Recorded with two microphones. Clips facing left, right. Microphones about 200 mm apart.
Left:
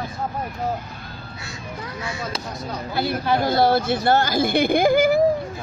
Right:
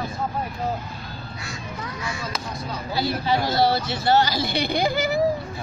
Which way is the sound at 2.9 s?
55° left (ahead or behind).